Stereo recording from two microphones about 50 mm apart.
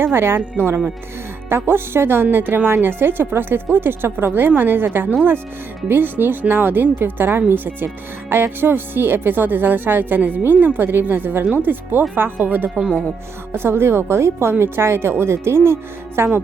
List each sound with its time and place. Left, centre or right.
0.0 s speech: right
13.5 s speech: right